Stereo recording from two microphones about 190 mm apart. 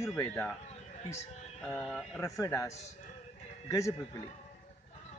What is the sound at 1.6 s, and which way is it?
Speech, 5° left (ahead or behind).